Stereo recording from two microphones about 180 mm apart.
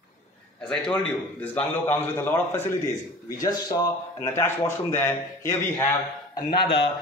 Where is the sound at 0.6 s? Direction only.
5° left (ahead or behind).